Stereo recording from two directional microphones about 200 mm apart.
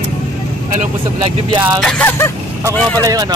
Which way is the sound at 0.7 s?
40° right (ahead or behind).